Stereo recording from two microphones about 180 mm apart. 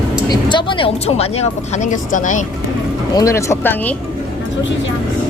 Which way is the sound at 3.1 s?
15° left (ahead or behind).